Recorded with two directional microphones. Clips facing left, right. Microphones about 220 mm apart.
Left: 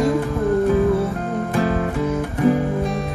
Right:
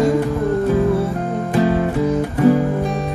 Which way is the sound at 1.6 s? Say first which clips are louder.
Right 5 dB; 30° right (ahead or behind).